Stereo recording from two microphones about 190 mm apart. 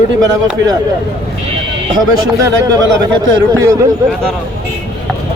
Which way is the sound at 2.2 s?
20° right (ahead or behind).